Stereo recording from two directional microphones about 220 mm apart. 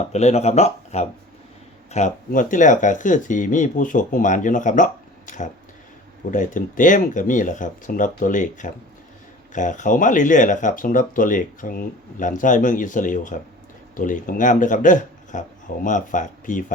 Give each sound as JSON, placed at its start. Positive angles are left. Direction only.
{"t": 0.1, "sound": "speech", "side_deg": 30}